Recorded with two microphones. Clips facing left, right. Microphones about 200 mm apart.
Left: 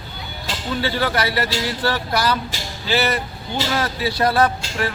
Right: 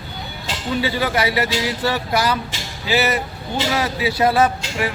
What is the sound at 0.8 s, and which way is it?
Speech, 10° right (ahead or behind).